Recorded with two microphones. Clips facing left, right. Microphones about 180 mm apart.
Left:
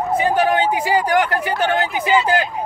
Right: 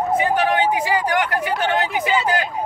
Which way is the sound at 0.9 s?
30° left (ahead or behind).